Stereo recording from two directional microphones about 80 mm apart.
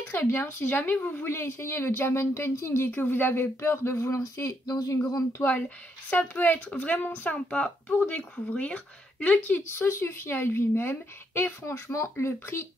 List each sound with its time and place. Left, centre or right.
0.0 s speech: left
1.3 s a woman's voice: left
6.0 s speech: left
7.3 s speech: centre
9.7 s a woman's voice: left